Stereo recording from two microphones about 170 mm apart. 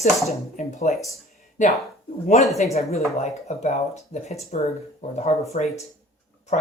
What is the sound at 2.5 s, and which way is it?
Speech, 40° left (ahead or behind).